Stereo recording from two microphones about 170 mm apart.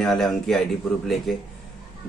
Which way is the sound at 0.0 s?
5° left (ahead or behind).